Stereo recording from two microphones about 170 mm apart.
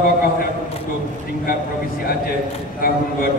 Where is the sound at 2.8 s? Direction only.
60° left (ahead or behind).